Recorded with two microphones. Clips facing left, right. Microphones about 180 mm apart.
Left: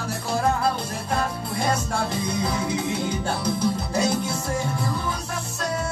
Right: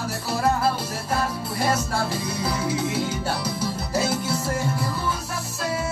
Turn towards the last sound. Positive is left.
turn(degrees=-5)  # may be behind; listen again after turning